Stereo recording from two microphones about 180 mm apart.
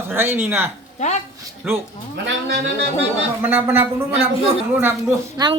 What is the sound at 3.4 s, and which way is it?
Speech, 10° right (ahead or behind).